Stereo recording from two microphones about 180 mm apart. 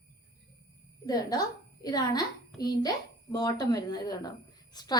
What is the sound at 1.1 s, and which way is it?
A woman's voice, 20° left (ahead or behind).